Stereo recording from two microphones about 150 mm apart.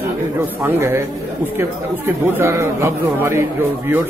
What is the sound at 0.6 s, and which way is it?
Speech, 20° right (ahead or behind).